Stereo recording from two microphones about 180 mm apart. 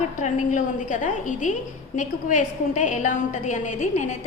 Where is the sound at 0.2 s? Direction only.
45° left (ahead or behind).